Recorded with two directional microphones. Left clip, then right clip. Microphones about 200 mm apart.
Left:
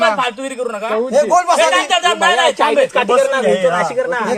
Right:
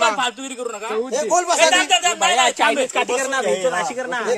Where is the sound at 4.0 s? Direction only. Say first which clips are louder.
Left 6 dB; 70° right (ahead or behind).